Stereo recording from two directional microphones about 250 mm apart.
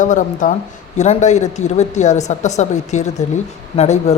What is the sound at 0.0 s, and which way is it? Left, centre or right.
Speech, left.